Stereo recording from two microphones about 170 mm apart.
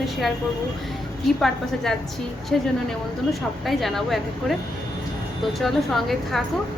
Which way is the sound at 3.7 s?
Centre (ahead or behind).